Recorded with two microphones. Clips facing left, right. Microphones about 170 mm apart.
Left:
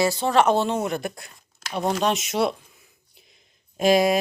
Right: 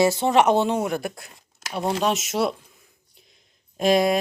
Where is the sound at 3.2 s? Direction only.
Centre (ahead or behind).